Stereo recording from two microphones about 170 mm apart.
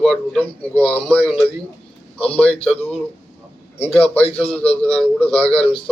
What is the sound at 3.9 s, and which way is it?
Speech, 35° left (ahead or behind).